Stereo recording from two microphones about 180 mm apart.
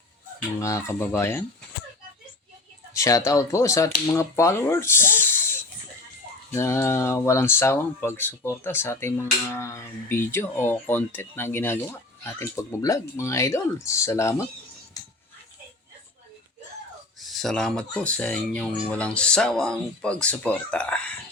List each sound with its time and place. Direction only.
0.6 s speech: 15° left (ahead or behind)
2.9 s speech: 20° left (ahead or behind)
15.0 s music: 20° left (ahead or behind)
17.2 s speech: centre (ahead or behind)